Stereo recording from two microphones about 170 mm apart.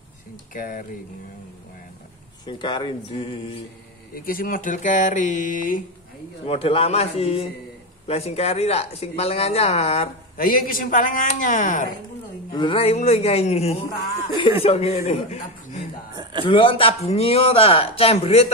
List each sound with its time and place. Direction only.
0.6 s speech: 55° left (ahead or behind)
2.4 s speech: 25° left (ahead or behind)
4.1 s speech: 55° left (ahead or behind)
6.4 s speech: 35° left (ahead or behind)
10.3 s speech: 55° left (ahead or behind)
12.5 s speech: 30° left (ahead or behind)